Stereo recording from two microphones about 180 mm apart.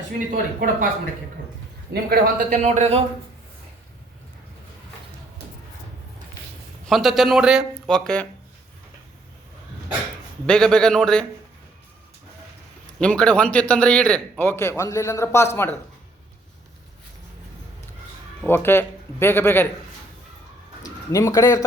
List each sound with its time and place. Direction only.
0.3 s speech: 50° right (ahead or behind)
1.9 s a man's voice: 55° right (ahead or behind)
2.6 s speech: 40° right (ahead or behind)
6.8 s speech: centre (ahead or behind)
10.4 s speech: 5° left (ahead or behind)
13.0 s a man's voice: 5° left (ahead or behind)
18.4 s a man's voice: 10° left (ahead or behind)
20.8 s a man's voice: 20° left (ahead or behind)